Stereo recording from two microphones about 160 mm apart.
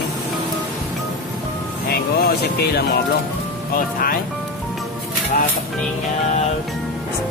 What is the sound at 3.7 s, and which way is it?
Speech, 65° left (ahead or behind).